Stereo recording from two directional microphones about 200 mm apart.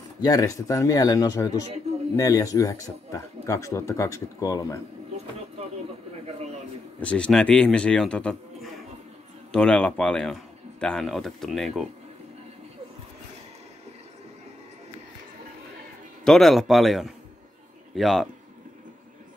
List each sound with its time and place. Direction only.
0.2 s speech: 15° left (ahead or behind)
7.0 s a man's voice: 5° left (ahead or behind)
16.3 s a man's voice: centre (ahead or behind)